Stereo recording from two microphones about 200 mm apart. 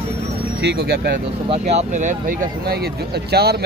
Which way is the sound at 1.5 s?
35° right (ahead or behind).